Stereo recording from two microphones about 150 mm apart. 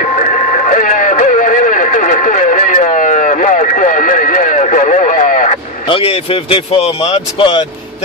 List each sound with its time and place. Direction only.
0.0 s radio: 55° left (ahead or behind)
5.9 s speech: 35° left (ahead or behind)